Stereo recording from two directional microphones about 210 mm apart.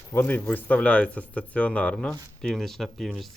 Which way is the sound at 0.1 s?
10° left (ahead or behind).